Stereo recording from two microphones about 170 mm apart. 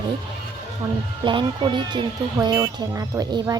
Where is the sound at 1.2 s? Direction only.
30° right (ahead or behind).